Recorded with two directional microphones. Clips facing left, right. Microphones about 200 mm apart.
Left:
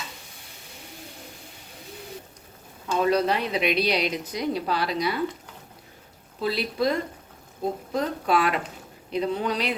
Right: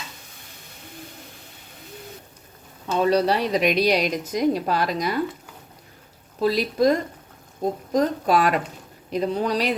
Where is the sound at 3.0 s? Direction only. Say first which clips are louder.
Right 3 dB; 35° right (ahead or behind).